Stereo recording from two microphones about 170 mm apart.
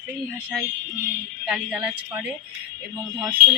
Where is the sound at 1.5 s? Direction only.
5° right (ahead or behind).